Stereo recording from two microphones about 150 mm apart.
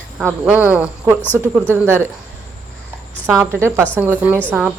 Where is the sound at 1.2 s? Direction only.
10° left (ahead or behind).